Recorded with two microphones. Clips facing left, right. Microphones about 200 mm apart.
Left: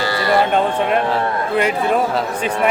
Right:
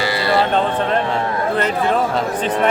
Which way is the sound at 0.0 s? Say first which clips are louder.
Even; 15° right (ahead or behind).